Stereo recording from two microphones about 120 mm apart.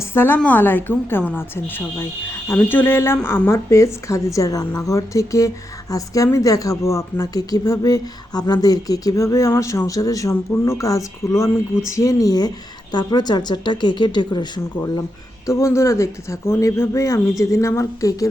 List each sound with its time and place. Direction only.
0.0 s a sound: 20° left (ahead or behind)
0.3 s a woman's voice: 15° left (ahead or behind); by 14.6 s 40° left (ahead or behind)
15.4 s speech: 25° left (ahead or behind)